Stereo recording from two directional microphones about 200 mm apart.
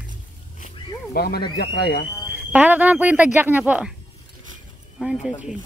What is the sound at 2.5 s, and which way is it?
Speech, 5° right (ahead or behind).